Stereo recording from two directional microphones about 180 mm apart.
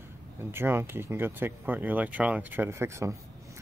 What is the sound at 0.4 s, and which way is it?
Speech, 15° right (ahead or behind).